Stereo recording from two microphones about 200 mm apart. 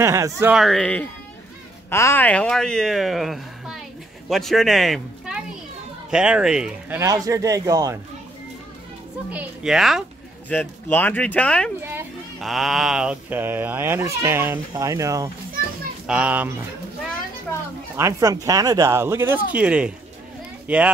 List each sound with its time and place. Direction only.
0.0 s speech: 15° right (ahead or behind)
0.6 s speech: centre (ahead or behind)
7.2 s speech: 15° right (ahead or behind)
9.3 s speech: 5° right (ahead or behind)
10.5 s speech: 10° left (ahead or behind)
11.8 s children playing: 10° right (ahead or behind)
12.4 s speech: centre (ahead or behind)
17.9 s a child's voice: 15° right (ahead or behind)